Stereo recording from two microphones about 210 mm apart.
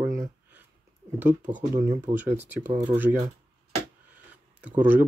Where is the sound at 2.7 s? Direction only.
25° right (ahead or behind).